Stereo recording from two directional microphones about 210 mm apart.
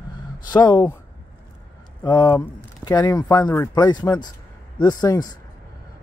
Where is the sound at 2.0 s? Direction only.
20° left (ahead or behind).